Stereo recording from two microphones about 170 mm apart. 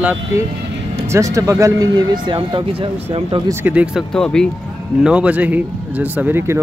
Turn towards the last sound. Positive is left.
turn(degrees=-10)  # may be behind; listen again after turning